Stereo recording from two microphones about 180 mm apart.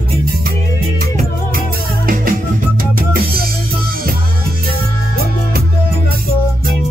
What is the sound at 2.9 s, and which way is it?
Drum kit, 55° right (ahead or behind).